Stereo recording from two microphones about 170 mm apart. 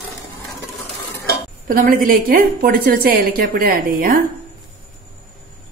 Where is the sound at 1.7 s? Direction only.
55° right (ahead or behind).